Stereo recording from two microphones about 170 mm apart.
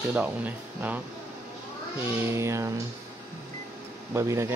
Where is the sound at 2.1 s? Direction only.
15° right (ahead or behind).